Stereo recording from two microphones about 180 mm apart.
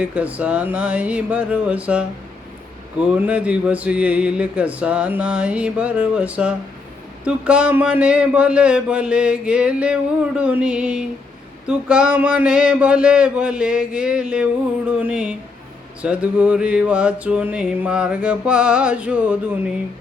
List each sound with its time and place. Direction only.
0.0 s speech: 5° right (ahead or behind)
3.1 s speech: 5° right (ahead or behind)
11.6 s a sound: 5° right (ahead or behind)
14.8 s speech: 5° right (ahead or behind)